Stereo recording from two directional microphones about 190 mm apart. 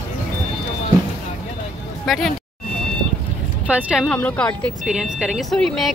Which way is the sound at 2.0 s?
Centre (ahead or behind).